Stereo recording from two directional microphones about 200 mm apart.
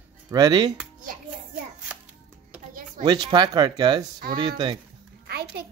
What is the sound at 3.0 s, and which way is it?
Speech, 20° right (ahead or behind).